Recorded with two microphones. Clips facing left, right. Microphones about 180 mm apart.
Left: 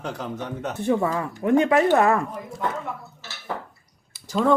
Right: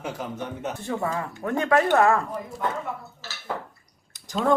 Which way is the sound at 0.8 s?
20° left (ahead or behind).